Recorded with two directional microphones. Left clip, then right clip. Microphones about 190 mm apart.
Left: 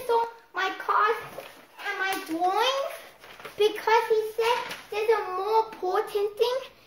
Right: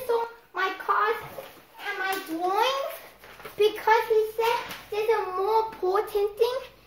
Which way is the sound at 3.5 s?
10° right (ahead or behind).